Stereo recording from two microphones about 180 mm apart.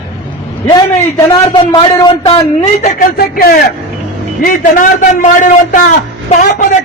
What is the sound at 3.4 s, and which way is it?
A man's voice, 55° left (ahead or behind).